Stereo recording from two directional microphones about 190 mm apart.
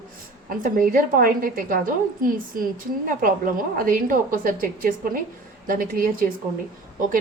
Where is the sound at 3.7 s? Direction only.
45° right (ahead or behind).